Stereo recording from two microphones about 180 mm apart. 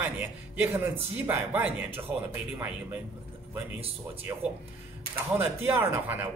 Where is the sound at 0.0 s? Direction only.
10° right (ahead or behind).